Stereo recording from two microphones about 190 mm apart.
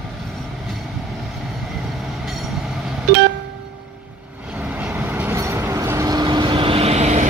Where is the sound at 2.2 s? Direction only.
Centre (ahead or behind).